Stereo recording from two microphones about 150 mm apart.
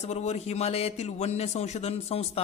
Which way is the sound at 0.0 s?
45° left (ahead or behind).